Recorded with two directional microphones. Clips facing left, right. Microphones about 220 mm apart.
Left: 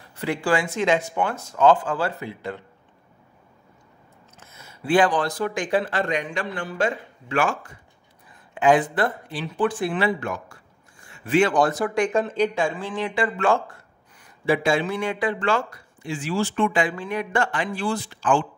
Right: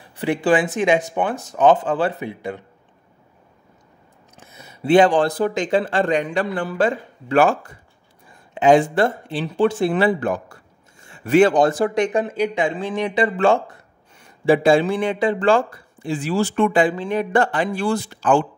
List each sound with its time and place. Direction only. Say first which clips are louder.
0.0 s speech: right 5 dB; 15° right (ahead or behind)
4.4 s a sound: right 7 dB; 15° right (ahead or behind)
5.4 s a man's voice: right 4 dB; 25° right (ahead or behind)
8.3 s a man's voice: right 4 dB; 25° right (ahead or behind)
16.9 s speech: right 5 dB; 25° right (ahead or behind)
17.2 s a man's voice: right 6 dB; 35° right (ahead or behind)